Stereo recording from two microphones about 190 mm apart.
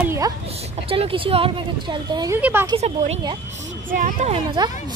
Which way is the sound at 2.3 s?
10° right (ahead or behind).